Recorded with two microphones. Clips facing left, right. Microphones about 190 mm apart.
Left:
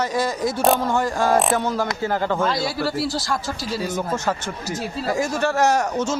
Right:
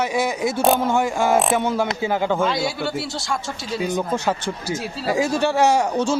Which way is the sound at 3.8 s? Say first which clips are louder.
Right 3 dB; 20° right (ahead or behind).